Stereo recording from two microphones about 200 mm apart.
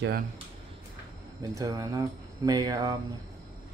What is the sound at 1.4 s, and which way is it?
Speech, 15° right (ahead or behind).